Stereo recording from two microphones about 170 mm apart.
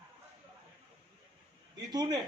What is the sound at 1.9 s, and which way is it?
Speech, 25° right (ahead or behind).